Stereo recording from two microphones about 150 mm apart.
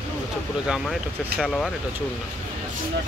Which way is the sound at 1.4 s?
Centre (ahead or behind).